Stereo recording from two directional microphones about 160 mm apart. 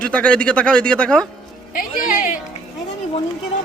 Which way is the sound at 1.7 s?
60° left (ahead or behind).